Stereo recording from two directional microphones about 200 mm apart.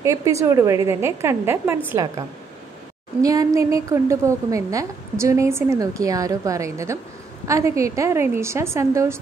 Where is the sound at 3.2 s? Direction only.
15° right (ahead or behind).